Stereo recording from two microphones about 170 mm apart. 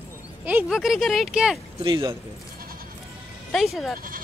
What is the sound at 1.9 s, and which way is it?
Speech, 30° right (ahead or behind).